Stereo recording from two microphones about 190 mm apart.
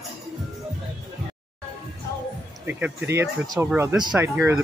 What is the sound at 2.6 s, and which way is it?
Speech, 10° right (ahead or behind).